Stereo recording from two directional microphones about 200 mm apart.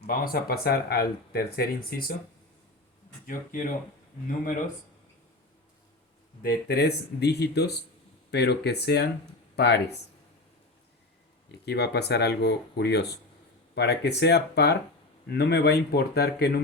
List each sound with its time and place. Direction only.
0.0 s speech: 50° left (ahead or behind)
3.2 s speech: 45° left (ahead or behind)
6.4 s speech: 50° left (ahead or behind)
11.6 s speech: 55° left (ahead or behind)